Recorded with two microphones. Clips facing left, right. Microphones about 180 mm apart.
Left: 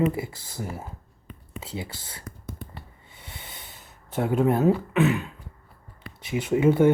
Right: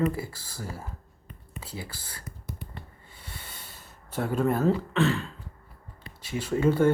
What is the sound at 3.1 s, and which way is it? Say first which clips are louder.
Snort: left 4 dB; 20° left (ahead or behind).